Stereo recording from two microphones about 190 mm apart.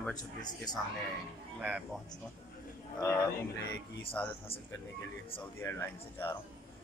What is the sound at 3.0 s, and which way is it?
Speech, 15° left (ahead or behind).